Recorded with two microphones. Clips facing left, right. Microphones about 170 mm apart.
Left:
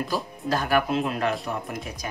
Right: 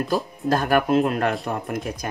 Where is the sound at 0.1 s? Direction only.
50° right (ahead or behind).